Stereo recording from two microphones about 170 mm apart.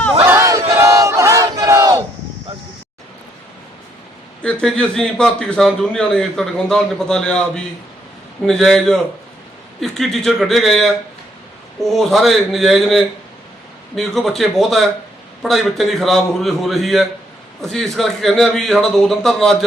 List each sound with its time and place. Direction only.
0.2 s battle cry: 15° right (ahead or behind)
4.4 s a man's voice: 5° left (ahead or behind)
11.9 s a man's voice: centre (ahead or behind)